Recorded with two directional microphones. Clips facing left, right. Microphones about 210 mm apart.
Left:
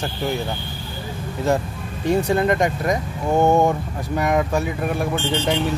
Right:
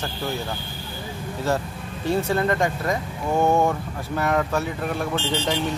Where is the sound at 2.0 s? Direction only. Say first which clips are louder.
Left 4 dB; 15° left (ahead or behind).